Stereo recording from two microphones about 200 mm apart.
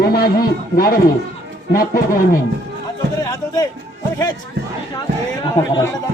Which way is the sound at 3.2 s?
20° left (ahead or behind).